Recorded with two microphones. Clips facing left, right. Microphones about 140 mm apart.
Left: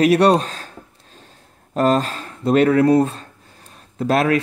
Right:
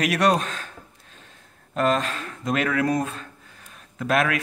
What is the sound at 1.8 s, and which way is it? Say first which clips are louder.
Speech: left 5 dB; 35° left (ahead or behind).